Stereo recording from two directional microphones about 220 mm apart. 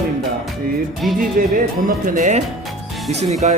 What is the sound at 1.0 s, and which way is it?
Music, centre (ahead or behind).